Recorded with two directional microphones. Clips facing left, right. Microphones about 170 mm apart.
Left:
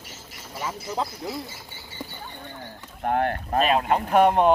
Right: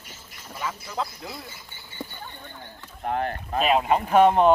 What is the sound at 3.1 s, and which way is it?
Speech, 60° left (ahead or behind).